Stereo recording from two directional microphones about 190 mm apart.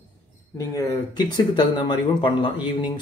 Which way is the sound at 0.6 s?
15° left (ahead or behind).